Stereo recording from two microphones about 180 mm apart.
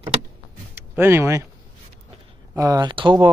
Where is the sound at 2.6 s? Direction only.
20° right (ahead or behind).